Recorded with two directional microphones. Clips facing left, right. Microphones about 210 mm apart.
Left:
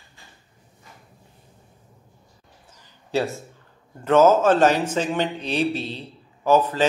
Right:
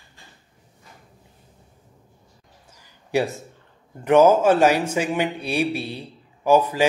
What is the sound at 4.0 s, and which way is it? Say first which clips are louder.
Speech: right 1 dB; 15° right (ahead or behind).